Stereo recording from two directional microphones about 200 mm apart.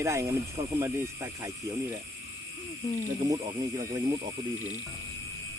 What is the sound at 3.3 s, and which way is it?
Speech, 15° right (ahead or behind).